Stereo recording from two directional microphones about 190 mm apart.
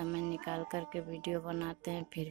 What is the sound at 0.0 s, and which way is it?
Speech, 20° right (ahead or behind).